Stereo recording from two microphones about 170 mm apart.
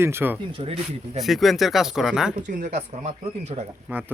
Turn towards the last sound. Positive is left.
turn(degrees=-10)  # may be behind; listen again after turning